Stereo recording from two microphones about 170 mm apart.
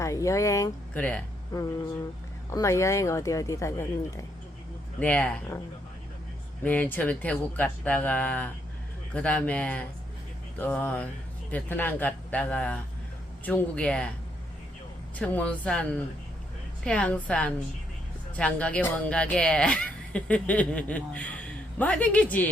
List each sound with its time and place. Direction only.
0.0 s speech: 20° left (ahead or behind)
2.5 s speech: 15° left (ahead or behind)
6.7 s speech: 10° left (ahead or behind)
15.2 s speech: 10° left (ahead or behind)